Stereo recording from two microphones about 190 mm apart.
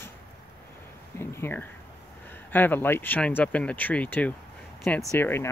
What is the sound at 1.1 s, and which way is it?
Speech, 10° left (ahead or behind).